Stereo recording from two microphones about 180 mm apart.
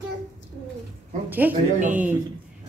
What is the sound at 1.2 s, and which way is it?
Speech, 10° right (ahead or behind).